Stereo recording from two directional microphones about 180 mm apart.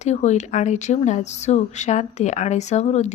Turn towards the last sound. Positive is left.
turn(degrees=40)  # may be behind; listen again after turning